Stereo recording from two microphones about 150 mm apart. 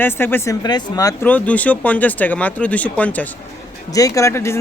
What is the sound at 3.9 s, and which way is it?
Speech, 20° left (ahead or behind).